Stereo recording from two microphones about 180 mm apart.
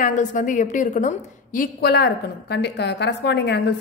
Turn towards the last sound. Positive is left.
turn(degrees=70)  # may be behind; listen again after turning